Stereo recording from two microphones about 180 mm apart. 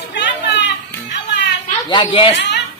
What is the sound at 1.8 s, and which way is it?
Speech, 25° left (ahead or behind).